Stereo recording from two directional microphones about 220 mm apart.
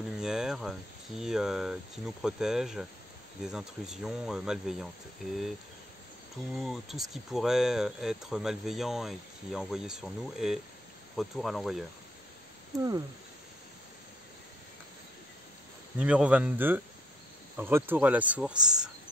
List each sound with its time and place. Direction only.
0.2 s speech: centre (ahead or behind)
6.5 s speech: centre (ahead or behind)
12.7 s speech: 15° right (ahead or behind)
16.0 s speech: 5° right (ahead or behind)